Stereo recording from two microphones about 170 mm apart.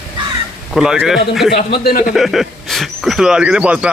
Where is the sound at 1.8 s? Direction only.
60° left (ahead or behind).